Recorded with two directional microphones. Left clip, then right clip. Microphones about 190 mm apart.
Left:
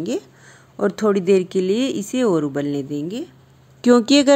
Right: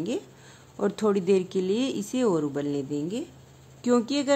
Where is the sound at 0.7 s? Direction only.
20° left (ahead or behind).